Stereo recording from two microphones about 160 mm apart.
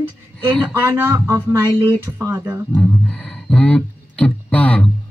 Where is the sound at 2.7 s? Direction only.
10° left (ahead or behind).